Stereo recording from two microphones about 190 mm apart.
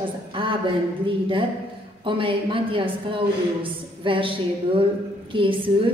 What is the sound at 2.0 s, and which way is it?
A woman's voice, 25° right (ahead or behind).